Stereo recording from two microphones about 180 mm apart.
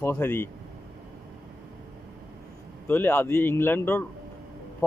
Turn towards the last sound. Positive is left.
turn(degrees=15)  # may be behind; listen again after turning